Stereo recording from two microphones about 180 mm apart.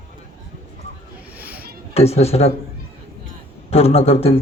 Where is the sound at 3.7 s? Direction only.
35° left (ahead or behind).